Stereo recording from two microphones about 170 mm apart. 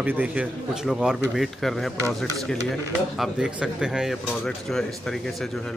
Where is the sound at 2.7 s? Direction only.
Centre (ahead or behind).